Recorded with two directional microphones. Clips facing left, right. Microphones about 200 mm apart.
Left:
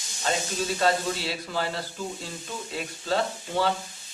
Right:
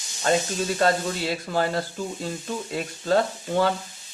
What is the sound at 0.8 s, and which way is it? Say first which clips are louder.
Speech: right 2 dB; 50° right (ahead or behind).